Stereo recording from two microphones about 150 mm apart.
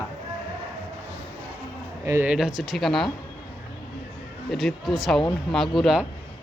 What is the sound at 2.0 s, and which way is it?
Speech, 20° right (ahead or behind).